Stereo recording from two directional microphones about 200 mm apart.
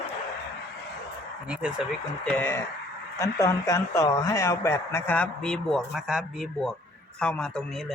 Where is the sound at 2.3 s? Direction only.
10° left (ahead or behind).